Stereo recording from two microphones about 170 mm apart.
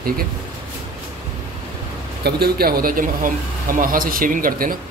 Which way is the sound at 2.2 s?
65° right (ahead or behind).